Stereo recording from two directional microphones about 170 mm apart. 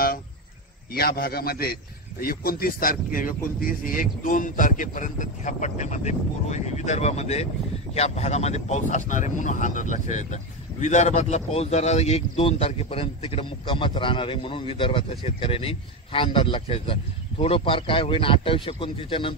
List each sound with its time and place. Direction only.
0.9 s a man's voice: 60° left (ahead or behind); by 19.3 s 30° left (ahead or behind)